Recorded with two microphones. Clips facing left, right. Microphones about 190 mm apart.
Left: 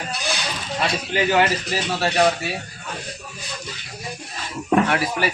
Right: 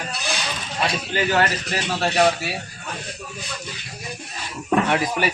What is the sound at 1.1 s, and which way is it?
Speech, 10° left (ahead or behind).